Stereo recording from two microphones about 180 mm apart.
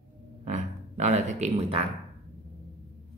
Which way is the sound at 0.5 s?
40° right (ahead or behind).